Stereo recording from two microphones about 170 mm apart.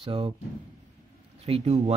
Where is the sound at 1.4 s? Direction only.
40° right (ahead or behind).